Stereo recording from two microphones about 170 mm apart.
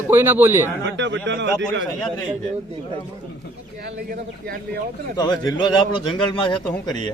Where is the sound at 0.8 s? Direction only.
90° right.